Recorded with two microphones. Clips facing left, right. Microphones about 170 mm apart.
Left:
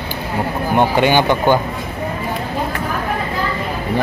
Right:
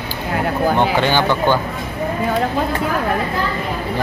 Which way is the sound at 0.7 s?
15° left (ahead or behind).